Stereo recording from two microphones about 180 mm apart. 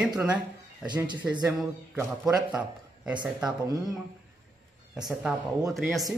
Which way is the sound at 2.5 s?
5° right (ahead or behind).